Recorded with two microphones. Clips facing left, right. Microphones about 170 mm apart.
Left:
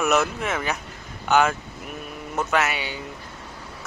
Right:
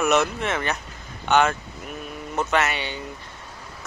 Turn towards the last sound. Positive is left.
turn(degrees=5)  # may be behind; listen again after turning